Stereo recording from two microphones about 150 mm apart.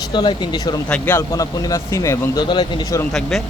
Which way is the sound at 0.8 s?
10° left (ahead or behind).